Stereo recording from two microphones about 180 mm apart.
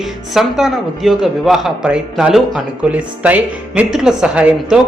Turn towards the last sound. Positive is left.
turn(degrees=-5)  # may be behind; listen again after turning